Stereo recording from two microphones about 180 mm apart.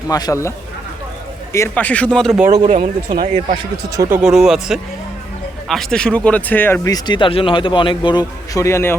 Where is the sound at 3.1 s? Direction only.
45° right (ahead or behind).